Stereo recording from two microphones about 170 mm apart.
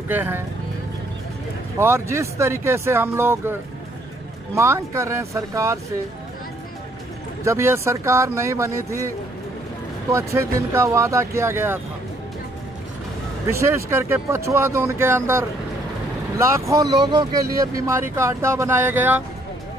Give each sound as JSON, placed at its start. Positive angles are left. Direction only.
{"t": 0.1, "sound": "speech", "side_deg": -10}
{"t": 1.8, "sound": "speech", "side_deg": -15}
{"t": 4.6, "sound": "speech", "side_deg": -15}
{"t": 7.4, "sound": "speech", "side_deg": -15}
{"t": 10.1, "sound": "speech", "side_deg": -15}
{"t": 13.5, "sound": "speech", "side_deg": -15}
{"t": 16.6, "sound": "speech", "side_deg": -20}